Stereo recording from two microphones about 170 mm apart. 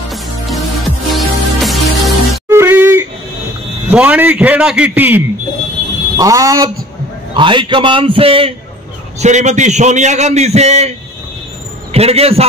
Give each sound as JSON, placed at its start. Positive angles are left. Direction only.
{"t": 0.1, "sound": "music", "side_deg": 0}
{"t": 2.5, "sound": "a sound", "side_deg": -15}
{"t": 3.9, "sound": "a man's voice", "side_deg": -10}
{"t": 11.9, "sound": "a man's voice", "side_deg": -35}